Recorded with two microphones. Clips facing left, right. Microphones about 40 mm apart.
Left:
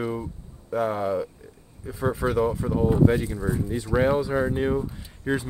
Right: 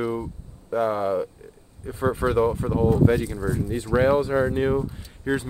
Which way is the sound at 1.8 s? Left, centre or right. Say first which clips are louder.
Right 2 dB; right.